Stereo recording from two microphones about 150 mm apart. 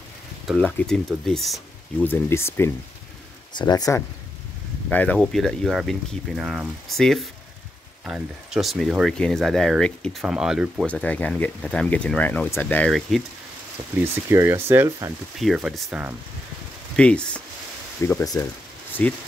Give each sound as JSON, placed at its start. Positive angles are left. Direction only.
{"t": 0.7, "sound": "speech", "side_deg": 10}
{"t": 2.0, "sound": "speech", "side_deg": 15}
{"t": 3.5, "sound": "speech", "side_deg": 25}
{"t": 4.8, "sound": "speech", "side_deg": 10}
{"t": 10.9, "sound": "speech", "side_deg": 10}
{"t": 13.9, "sound": "speech", "side_deg": -15}
{"t": 15.3, "sound": "speech", "side_deg": 0}
{"t": 16.9, "sound": "speech", "side_deg": 5}
{"t": 18.2, "sound": "speech", "side_deg": 25}
{"t": 19.0, "sound": "speech", "side_deg": 10}